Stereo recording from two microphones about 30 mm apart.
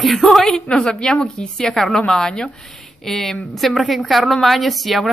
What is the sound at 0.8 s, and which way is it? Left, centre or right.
A woman's voice, left.